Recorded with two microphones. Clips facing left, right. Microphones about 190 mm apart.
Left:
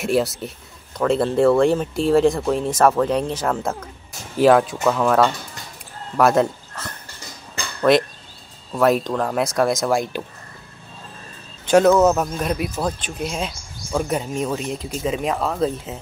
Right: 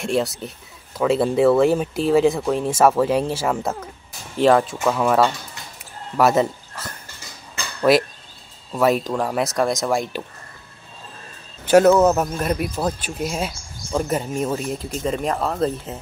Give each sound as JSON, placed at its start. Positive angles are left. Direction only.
{"t": 0.0, "sound": "speech", "side_deg": 0}
{"t": 7.9, "sound": "speech", "side_deg": -5}
{"t": 11.6, "sound": "speech", "side_deg": -5}